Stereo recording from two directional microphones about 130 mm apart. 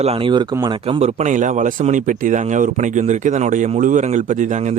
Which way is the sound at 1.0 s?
60° right (ahead or behind).